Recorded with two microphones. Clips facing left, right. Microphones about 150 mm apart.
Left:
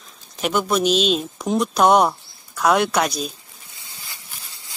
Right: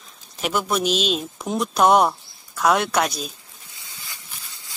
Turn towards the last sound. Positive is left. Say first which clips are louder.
# left 2 dB
turn(degrees=0)  # may be behind; listen again after turning